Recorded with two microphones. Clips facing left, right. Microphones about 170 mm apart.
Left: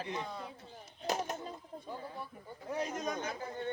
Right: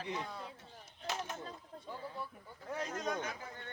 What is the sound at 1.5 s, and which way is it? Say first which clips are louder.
Speech: left 3 dB; 15° left (ahead or behind).